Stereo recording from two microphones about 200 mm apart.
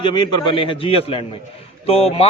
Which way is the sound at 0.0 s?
25° left (ahead or behind).